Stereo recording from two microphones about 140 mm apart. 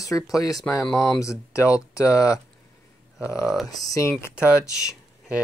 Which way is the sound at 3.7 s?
25° left (ahead or behind).